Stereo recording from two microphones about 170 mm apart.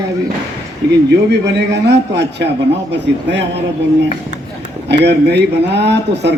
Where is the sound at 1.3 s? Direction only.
90° right.